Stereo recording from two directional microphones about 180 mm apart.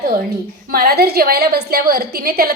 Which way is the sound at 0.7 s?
60° right (ahead or behind).